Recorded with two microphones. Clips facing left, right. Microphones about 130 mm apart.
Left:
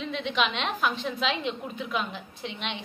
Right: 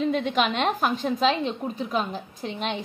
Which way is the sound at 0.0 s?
45° right (ahead or behind).